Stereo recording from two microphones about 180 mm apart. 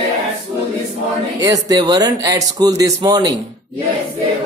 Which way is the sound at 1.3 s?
20° right (ahead or behind).